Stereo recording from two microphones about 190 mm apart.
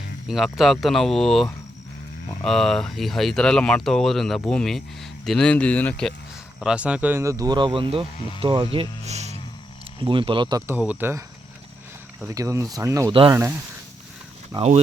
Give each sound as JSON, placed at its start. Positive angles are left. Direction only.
{"t": 0.3, "sound": "speech", "side_deg": 0}
{"t": 6.6, "sound": "speech", "side_deg": -5}
{"t": 10.7, "sound": "speech", "side_deg": -10}
{"t": 12.3, "sound": "speech", "side_deg": -15}